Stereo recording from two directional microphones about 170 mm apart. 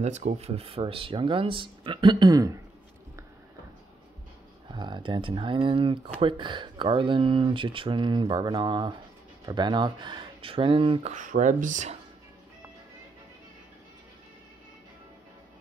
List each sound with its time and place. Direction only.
0.0 s speech: 40° right (ahead or behind); by 2.6 s 20° right (ahead or behind)
4.6 s speech: 25° right (ahead or behind); by 12.0 s 45° right (ahead or behind)